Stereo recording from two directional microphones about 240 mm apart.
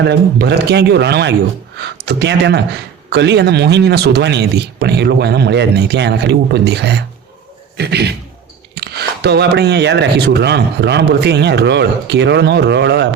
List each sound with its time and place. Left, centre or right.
0.0 s speech: right